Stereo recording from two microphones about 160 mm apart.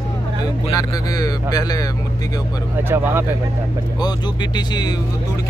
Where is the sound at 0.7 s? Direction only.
20° left (ahead or behind).